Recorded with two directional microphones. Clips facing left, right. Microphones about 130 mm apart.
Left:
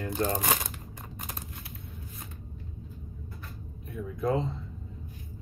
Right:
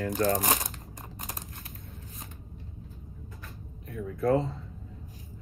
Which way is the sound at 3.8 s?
20° left (ahead or behind).